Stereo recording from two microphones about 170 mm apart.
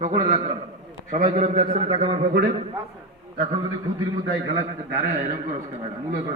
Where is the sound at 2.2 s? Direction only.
70° right (ahead or behind).